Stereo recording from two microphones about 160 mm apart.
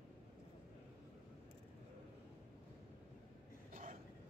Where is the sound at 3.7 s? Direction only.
60° right (ahead or behind).